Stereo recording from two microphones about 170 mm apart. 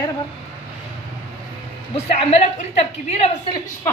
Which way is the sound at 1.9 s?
35° left (ahead or behind).